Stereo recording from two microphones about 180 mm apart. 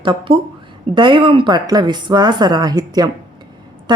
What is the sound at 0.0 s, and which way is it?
Speech, 25° right (ahead or behind).